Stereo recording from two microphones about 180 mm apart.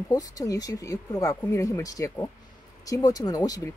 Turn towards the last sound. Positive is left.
turn(degrees=20)  # may be behind; listen again after turning